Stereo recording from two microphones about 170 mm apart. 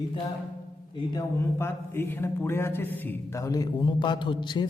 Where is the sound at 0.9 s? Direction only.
25° left (ahead or behind).